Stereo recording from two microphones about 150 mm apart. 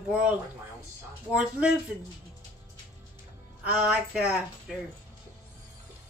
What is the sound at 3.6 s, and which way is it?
Speech, 10° right (ahead or behind).